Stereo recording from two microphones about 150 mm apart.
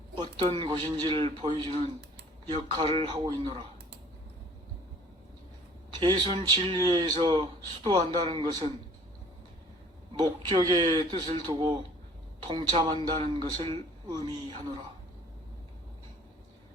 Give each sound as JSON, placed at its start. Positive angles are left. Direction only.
{"t": 0.2, "sound": "speech", "side_deg": -30}
{"t": 6.0, "sound": "speech", "side_deg": -30}
{"t": 10.2, "sound": "speech", "side_deg": -25}